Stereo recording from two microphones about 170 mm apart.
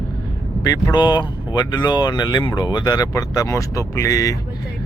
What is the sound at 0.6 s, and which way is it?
Speech, 25° left (ahead or behind).